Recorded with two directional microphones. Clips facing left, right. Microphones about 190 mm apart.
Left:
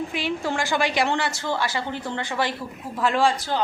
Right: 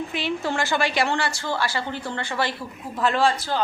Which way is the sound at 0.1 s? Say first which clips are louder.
Even; 10° left (ahead or behind).